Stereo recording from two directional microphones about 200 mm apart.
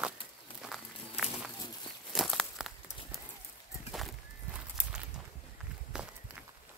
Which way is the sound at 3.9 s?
Centre (ahead or behind).